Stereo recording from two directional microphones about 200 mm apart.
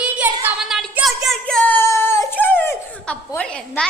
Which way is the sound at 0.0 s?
5° right (ahead or behind).